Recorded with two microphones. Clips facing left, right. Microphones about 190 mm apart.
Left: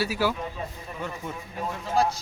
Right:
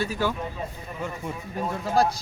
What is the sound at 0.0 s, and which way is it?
Speech, 10° left (ahead or behind).